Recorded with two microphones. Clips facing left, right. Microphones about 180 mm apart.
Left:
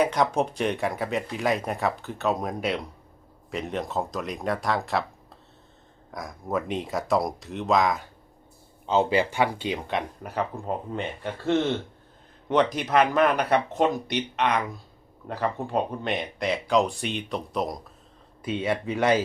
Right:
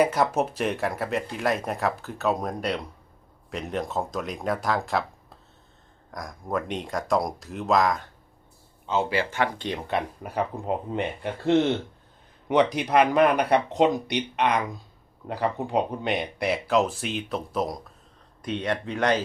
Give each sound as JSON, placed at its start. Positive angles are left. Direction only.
{"t": 0.0, "sound": "speech", "side_deg": -5}
{"t": 8.9, "sound": "speech", "side_deg": 20}
{"t": 9.9, "sound": "speech", "side_deg": -5}
{"t": 10.6, "sound": "speech", "side_deg": -15}